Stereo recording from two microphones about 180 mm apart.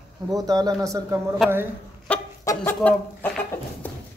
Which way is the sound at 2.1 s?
10° left (ahead or behind).